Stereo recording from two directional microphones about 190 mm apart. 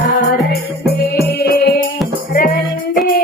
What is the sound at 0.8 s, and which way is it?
Music, 55° left (ahead or behind).